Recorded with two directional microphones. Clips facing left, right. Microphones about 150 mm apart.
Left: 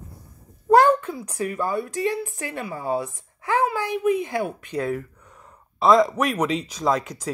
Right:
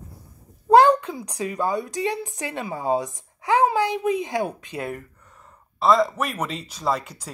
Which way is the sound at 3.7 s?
20° right (ahead or behind).